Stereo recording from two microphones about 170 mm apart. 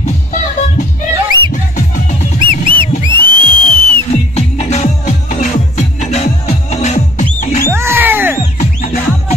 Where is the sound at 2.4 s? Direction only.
30° right (ahead or behind).